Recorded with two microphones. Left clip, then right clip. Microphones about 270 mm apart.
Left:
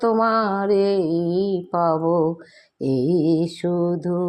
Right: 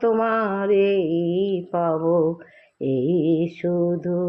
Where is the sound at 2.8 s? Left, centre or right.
Left.